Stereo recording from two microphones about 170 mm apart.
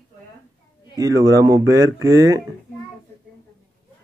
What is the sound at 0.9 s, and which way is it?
Speech, 20° right (ahead or behind).